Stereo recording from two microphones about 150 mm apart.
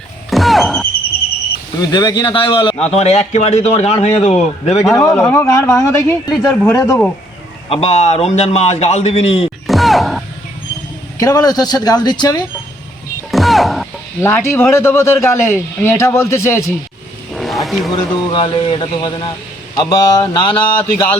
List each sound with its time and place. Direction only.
0.3 s a sound: centre (ahead or behind)
1.8 s speech: 25° left (ahead or behind)
2.9 s a man's voice: 45° left (ahead or behind)
4.9 s speech: 20° left (ahead or behind)
7.7 s a man's voice: 40° left (ahead or behind)
9.6 s music: centre (ahead or behind)
11.2 s speech: 25° left (ahead or behind)
13.3 s music: centre (ahead or behind)
14.2 s a man's voice: 15° left (ahead or behind)
17.3 s vehicle: centre (ahead or behind)
17.9 s speech: 30° left (ahead or behind)